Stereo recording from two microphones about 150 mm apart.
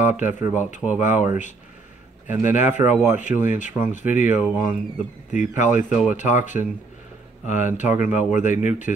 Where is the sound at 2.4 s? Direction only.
55° left (ahead or behind).